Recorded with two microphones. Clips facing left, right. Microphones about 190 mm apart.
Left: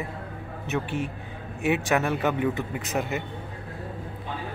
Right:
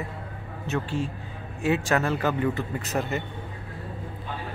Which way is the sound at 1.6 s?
20° left (ahead or behind).